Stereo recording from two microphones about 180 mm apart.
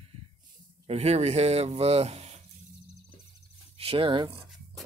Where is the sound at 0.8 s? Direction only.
35° right (ahead or behind).